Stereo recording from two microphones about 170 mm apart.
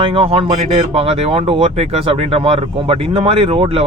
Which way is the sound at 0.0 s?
35° right (ahead or behind).